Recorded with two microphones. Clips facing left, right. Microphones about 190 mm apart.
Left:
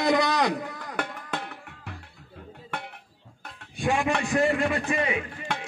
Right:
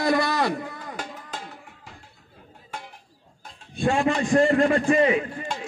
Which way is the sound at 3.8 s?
15° left (ahead or behind).